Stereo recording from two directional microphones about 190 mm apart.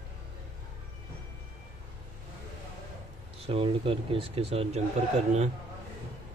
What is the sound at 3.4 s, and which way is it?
Speech, 30° right (ahead or behind).